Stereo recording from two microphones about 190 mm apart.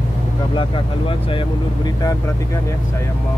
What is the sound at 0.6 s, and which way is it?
Speech, 30° left (ahead or behind).